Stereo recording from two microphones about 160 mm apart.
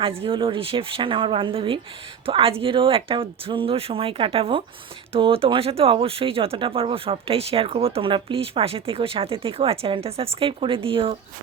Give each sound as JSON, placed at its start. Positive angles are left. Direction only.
{"t": 0.0, "sound": "speech", "side_deg": -35}